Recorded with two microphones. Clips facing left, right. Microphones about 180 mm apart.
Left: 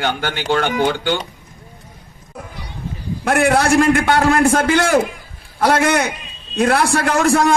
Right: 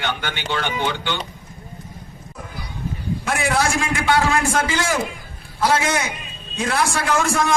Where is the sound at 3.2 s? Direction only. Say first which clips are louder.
Left 7 dB; 60° left (ahead or behind).